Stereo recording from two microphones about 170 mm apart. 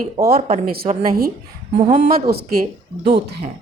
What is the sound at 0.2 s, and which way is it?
Speech, 60° right (ahead or behind).